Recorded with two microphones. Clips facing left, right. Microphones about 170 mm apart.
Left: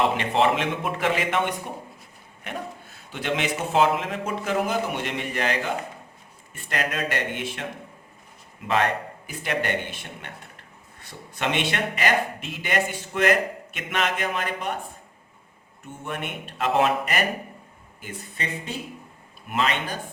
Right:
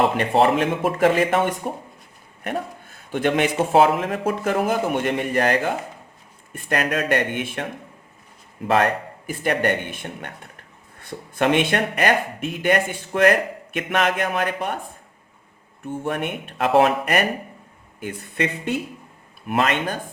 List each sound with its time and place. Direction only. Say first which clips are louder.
0.2 s a man's voice: right 4 dB; 45° right (ahead or behind)
15.9 s speech: right 7 dB; 55° right (ahead or behind)
19.5 s speech: right 4 dB; 50° right (ahead or behind)